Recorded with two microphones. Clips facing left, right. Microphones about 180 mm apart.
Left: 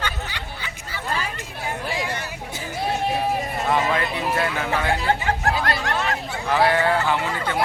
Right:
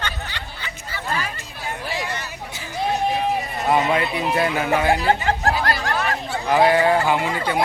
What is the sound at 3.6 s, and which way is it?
Speech, 15° right (ahead or behind).